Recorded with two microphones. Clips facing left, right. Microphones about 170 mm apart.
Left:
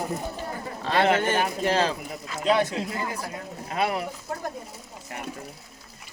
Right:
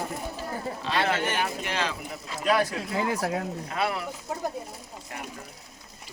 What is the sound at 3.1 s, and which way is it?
Speech, 90° right.